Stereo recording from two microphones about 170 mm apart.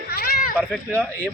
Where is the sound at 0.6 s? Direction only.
5° left (ahead or behind).